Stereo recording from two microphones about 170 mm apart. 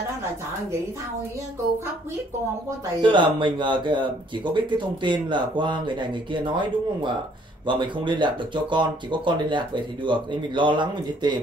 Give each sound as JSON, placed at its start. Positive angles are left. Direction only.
{"t": 3.0, "sound": "speech", "side_deg": -30}